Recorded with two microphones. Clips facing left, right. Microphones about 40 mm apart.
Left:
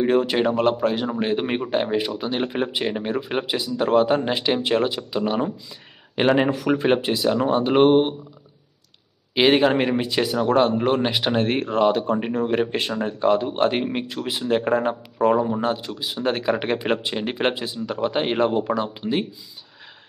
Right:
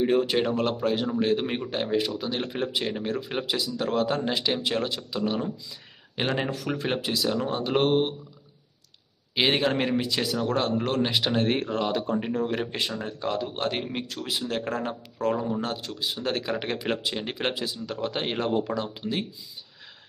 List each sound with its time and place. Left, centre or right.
0.0 s speech: centre
1.2 s a man's voice: left
4.8 s speech: centre
5.2 s a man's voice: left
9.3 s a man's voice: centre
9.7 s a man's voice: left